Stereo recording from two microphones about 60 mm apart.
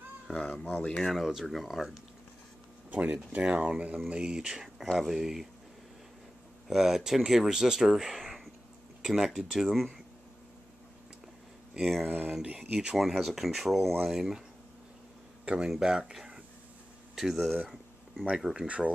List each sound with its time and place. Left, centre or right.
0.3 s speech: centre
1.1 s speech: centre
2.9 s speech: right; by 5.5 s centre
6.7 s speech: centre
11.8 s speech: centre
12.1 s speech: right
12.5 s speech: centre
15.4 s speech: centre